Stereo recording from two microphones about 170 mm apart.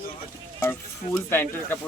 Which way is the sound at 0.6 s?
10° left (ahead or behind).